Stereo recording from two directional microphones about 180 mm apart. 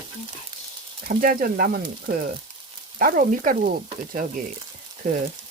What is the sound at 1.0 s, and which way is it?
Speech, 50° right (ahead or behind).